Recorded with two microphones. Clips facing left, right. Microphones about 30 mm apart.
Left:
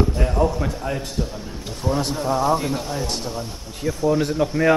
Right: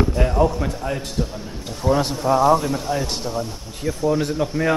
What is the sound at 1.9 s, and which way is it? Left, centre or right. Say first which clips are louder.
Speech: right 4 dB; centre.